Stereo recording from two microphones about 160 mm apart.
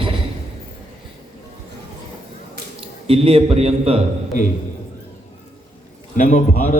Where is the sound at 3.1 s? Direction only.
35° right (ahead or behind).